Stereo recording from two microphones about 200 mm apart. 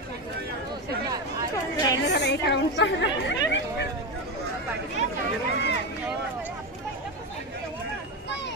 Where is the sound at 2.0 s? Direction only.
60° left (ahead or behind).